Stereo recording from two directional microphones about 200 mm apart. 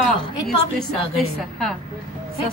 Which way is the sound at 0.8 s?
Centre (ahead or behind).